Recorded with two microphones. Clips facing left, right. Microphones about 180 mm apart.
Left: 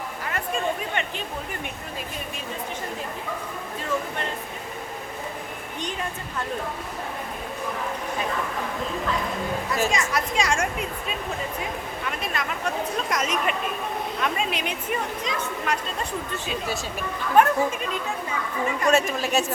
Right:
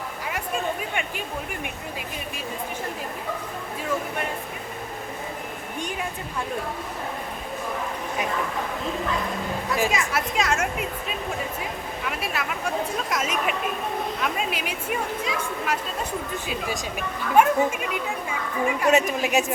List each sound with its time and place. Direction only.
0.3 s a sound: 10° right (ahead or behind)
9.7 s speech: 10° right (ahead or behind)
12.2 s speech: 5° right (ahead or behind)
17.3 s speech: 10° right (ahead or behind)